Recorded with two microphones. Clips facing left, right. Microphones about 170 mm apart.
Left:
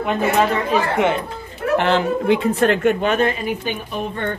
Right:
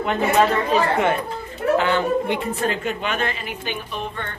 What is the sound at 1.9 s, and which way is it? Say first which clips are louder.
Speech: left 3 dB; 90° left.